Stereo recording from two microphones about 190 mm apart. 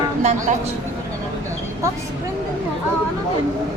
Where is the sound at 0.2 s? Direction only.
40° right (ahead or behind).